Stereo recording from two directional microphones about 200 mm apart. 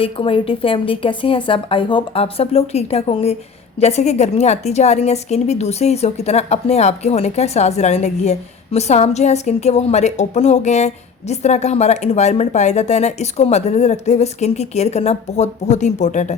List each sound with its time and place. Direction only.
0.0 s a woman's voice: 25° left (ahead or behind)